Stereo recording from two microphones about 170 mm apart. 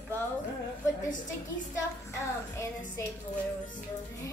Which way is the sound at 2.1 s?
15° left (ahead or behind).